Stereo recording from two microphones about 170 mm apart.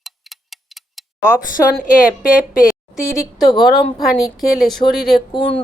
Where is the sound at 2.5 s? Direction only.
Centre (ahead or behind).